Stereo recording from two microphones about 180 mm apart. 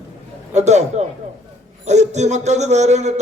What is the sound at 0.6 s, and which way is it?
A man's voice, 40° right (ahead or behind).